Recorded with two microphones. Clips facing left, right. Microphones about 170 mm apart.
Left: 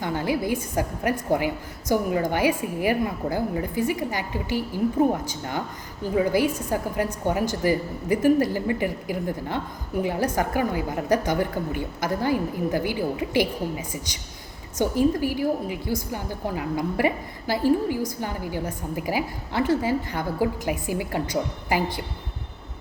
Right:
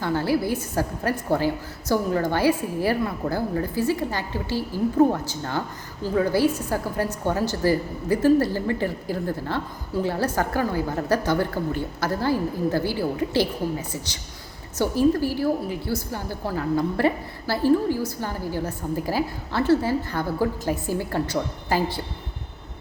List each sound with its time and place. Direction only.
0.0 s a woman's voice: 15° left (ahead or behind)